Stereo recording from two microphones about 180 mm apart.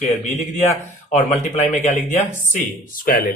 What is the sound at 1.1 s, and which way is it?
Speech, 40° left (ahead or behind).